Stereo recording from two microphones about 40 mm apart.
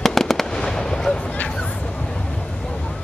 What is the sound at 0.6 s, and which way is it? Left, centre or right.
Fireworks, centre.